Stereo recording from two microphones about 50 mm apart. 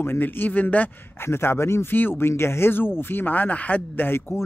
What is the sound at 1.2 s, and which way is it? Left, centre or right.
Speech, left.